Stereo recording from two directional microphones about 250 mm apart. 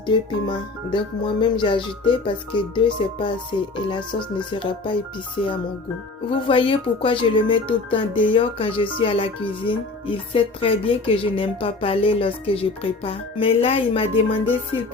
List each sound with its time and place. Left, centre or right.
0.1 s speech: centre